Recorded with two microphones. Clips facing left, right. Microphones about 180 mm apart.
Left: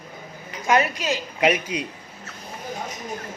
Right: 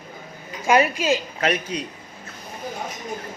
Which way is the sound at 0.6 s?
15° right (ahead or behind).